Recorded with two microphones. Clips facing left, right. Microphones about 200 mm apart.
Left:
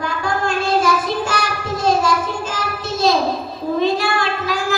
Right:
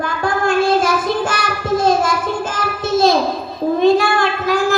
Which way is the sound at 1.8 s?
55° right (ahead or behind).